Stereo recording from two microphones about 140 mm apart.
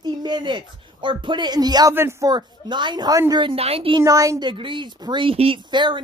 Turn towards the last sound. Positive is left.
turn(degrees=-35)  # may be behind; listen again after turning